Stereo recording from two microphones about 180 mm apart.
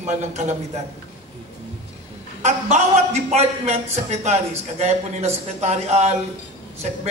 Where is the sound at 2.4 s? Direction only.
40° right (ahead or behind).